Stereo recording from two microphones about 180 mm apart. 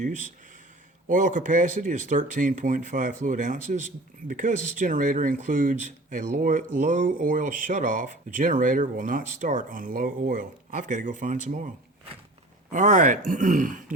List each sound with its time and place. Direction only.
0.0 s speech: 45° right (ahead or behind)